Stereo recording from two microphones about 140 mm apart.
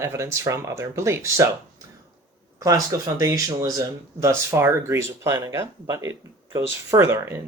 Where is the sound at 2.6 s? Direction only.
25° right (ahead or behind).